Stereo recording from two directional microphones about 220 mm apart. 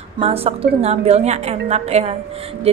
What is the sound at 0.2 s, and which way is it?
A woman's voice, 25° right (ahead or behind).